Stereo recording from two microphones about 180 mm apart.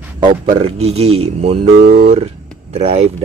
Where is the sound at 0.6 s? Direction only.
35° right (ahead or behind).